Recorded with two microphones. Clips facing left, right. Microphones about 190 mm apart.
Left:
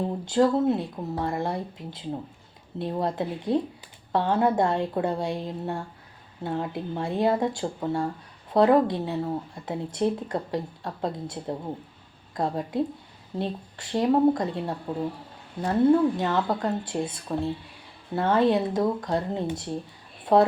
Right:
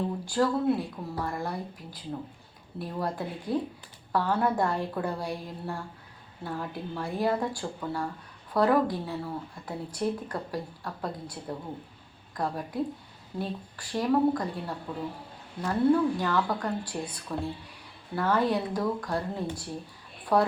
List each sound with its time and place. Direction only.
0.3 s speech: 25° left (ahead or behind)